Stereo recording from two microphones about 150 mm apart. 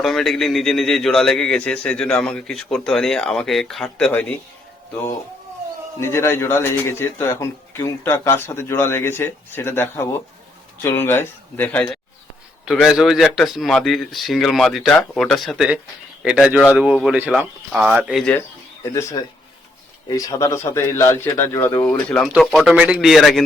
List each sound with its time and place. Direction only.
0.0 s a man's voice: centre (ahead or behind)
6.0 s a man's voice: 15° left (ahead or behind)
12.6 s a man's voice: centre (ahead or behind)
18.2 s a man's voice: 15° left (ahead or behind)
22.3 s a man's voice: centre (ahead or behind)